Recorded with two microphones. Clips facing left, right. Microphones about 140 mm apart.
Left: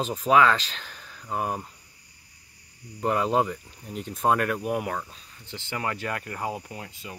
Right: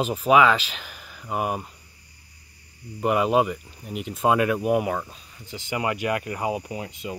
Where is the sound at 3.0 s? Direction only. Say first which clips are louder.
Right 3 dB; 15° right (ahead or behind).